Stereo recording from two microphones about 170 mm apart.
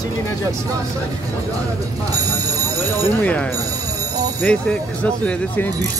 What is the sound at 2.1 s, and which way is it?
Telephone bell ringing, 20° right (ahead or behind).